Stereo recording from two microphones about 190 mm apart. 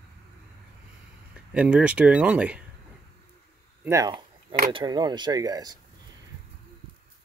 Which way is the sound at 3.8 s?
15° right (ahead or behind).